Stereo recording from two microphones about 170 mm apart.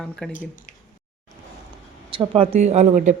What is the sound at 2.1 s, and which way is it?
Speech, 30° right (ahead or behind).